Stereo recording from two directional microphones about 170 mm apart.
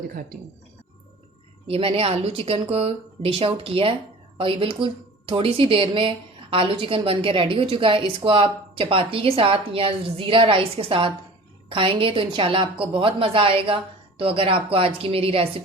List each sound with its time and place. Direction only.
0.1 s speech: 60° right (ahead or behind)
1.6 s speech: 35° right (ahead or behind)